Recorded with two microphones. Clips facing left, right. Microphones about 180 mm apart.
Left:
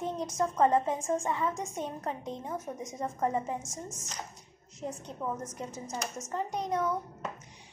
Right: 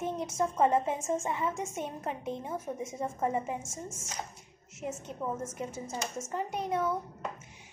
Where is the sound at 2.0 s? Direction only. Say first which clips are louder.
Right 1 dB; 10° right (ahead or behind).